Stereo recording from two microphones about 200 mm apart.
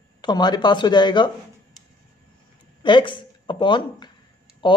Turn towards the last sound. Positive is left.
turn(degrees=25)  # may be behind; listen again after turning